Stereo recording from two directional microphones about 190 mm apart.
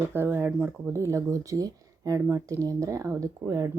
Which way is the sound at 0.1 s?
10° right (ahead or behind).